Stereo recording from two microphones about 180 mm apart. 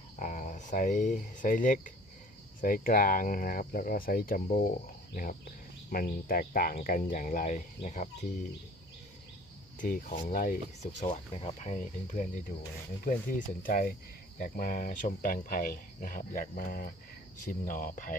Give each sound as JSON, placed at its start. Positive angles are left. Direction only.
{"t": 0.2, "sound": "speech", "side_deg": 45}
{"t": 9.8, "sound": "speech", "side_deg": 50}